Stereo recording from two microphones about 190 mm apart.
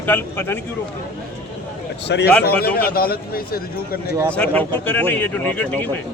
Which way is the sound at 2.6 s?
55° left (ahead or behind).